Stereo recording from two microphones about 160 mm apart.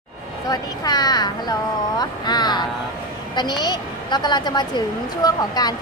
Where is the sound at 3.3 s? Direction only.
25° left (ahead or behind).